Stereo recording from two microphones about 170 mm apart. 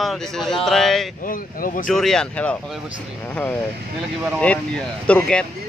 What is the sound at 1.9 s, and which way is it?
Speech, 5° left (ahead or behind).